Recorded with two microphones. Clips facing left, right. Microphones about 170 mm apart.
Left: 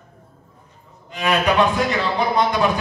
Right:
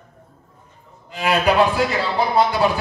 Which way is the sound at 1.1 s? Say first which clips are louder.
Right 1 dB; 35° right (ahead or behind).